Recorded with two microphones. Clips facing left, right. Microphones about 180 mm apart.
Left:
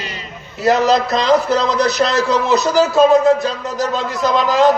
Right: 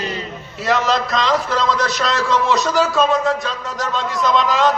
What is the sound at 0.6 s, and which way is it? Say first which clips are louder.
Speech: left 5 dB; 40° left (ahead or behind).